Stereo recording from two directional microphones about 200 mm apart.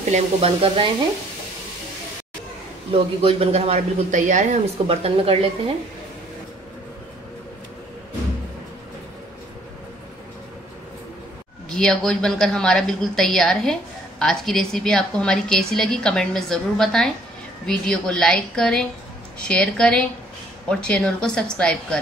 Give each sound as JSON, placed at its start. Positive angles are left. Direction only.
{"t": 0.1, "sound": "speech", "side_deg": -30}
{"t": 2.9, "sound": "speech", "side_deg": -30}
{"t": 11.7, "sound": "a woman's voice", "side_deg": 5}